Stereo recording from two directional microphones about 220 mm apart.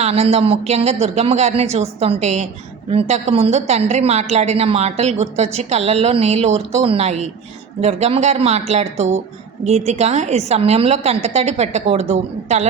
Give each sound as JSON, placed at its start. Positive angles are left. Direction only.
{"t": 0.0, "sound": "a woman's voice", "side_deg": -30}